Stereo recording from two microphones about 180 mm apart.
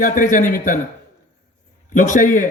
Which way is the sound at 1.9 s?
45° left (ahead or behind).